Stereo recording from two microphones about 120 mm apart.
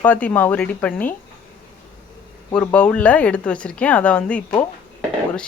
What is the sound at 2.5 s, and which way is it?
Speech, 10° left (ahead or behind).